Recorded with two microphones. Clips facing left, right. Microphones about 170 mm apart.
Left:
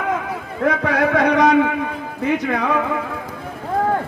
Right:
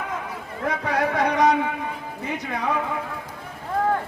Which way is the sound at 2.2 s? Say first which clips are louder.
Left 8 dB; 85° left.